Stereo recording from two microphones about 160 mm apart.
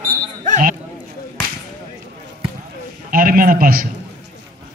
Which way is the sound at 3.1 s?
65° right (ahead or behind).